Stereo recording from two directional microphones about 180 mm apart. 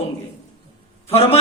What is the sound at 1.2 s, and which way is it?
Speech, 35° left (ahead or behind).